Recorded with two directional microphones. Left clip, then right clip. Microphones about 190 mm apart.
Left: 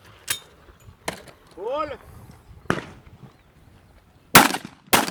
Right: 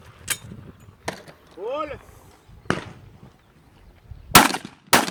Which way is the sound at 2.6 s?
30° left (ahead or behind).